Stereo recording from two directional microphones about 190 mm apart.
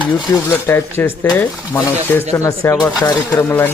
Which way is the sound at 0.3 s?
10° left (ahead or behind).